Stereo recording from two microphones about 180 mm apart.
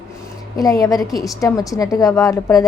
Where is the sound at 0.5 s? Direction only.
20° left (ahead or behind).